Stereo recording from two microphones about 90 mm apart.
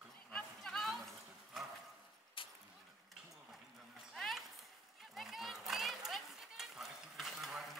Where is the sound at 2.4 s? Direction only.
75° left (ahead or behind).